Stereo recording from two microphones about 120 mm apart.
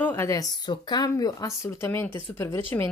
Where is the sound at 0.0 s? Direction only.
20° left (ahead or behind).